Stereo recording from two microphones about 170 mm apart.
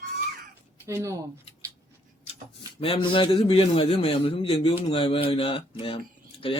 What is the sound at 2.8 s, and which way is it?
Speech, 30° left (ahead or behind).